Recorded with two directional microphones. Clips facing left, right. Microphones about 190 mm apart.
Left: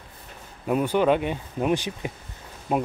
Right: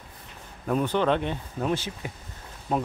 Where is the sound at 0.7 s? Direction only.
10° left (ahead or behind).